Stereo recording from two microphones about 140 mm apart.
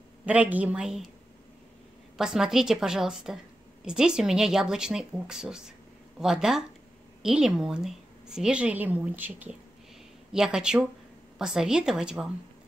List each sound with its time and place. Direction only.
0.2 s a woman's voice: 10° right (ahead or behind)
2.1 s a woman's voice: 5° right (ahead or behind)